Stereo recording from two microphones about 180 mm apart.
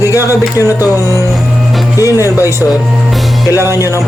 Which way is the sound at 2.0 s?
20° left (ahead or behind).